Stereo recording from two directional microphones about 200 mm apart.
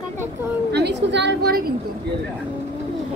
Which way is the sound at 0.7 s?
55° right (ahead or behind).